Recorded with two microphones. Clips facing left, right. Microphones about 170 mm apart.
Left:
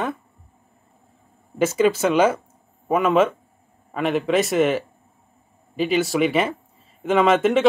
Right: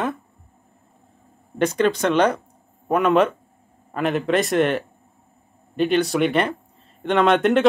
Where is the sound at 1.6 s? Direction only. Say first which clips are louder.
Left 1 dB; 5° left (ahead or behind).